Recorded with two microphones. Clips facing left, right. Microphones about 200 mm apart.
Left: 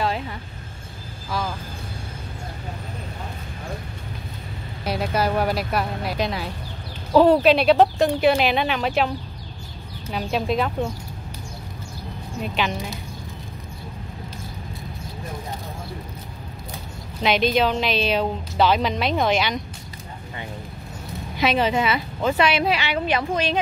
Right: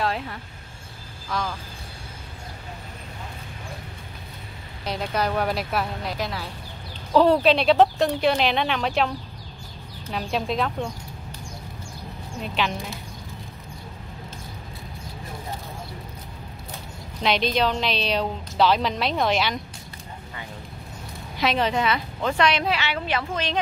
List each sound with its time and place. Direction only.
0.0 s a sound: centre (ahead or behind)
1.3 s a woman's voice: 5° left (ahead or behind)
4.8 s a woman's voice: 5° left (ahead or behind)
6.1 s a woman's voice: 20° left (ahead or behind)
7.1 s a woman's voice: 5° left (ahead or behind)
10.1 s a woman's voice: centre (ahead or behind)
17.2 s a woman's voice: 5° left (ahead or behind)
21.4 s a woman's voice: 5° left (ahead or behind)